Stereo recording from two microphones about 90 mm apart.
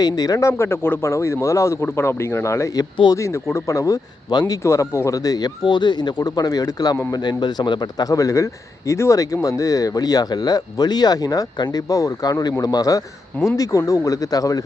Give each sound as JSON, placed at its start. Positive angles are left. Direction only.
{"t": 0.0, "sound": "speech", "side_deg": 45}
{"t": 5.6, "sound": "speech", "side_deg": 55}
{"t": 11.9, "sound": "speech", "side_deg": 40}